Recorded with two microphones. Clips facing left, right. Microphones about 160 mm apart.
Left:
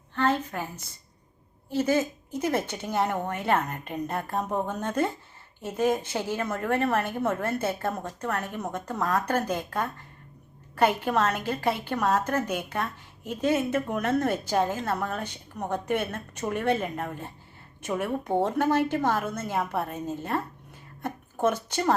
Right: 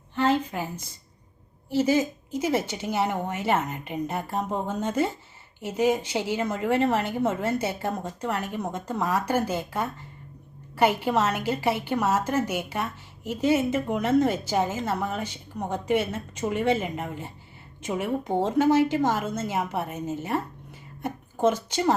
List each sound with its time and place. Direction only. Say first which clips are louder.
0.2 s a woman's voice: right 2 dB; 10° right (ahead or behind)
4.4 s a woman's voice: even; 20° right (ahead or behind)
4.8 s a woman's voice: right 2 dB; 10° right (ahead or behind)
7.1 s a woman's voice: right 2 dB; 10° right (ahead or behind)
19.0 s a woman's voice: right 1 dB; 25° right (ahead or behind)
19.5 s a woman's voice: even; 10° right (ahead or behind)